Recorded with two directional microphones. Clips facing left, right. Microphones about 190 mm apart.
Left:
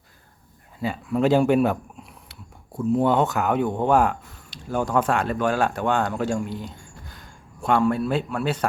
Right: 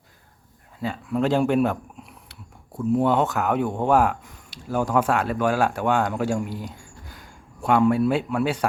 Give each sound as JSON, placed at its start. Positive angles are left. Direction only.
{"t": 0.8, "sound": "speech", "side_deg": 5}
{"t": 2.9, "sound": "speech", "side_deg": -5}